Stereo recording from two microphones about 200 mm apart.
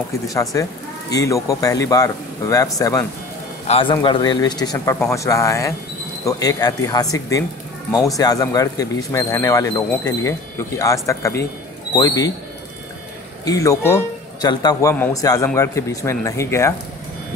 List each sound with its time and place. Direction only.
0.3 s speech: 15° left (ahead or behind)
3.6 s speech: 25° left (ahead or behind)
13.5 s speech: 15° left (ahead or behind)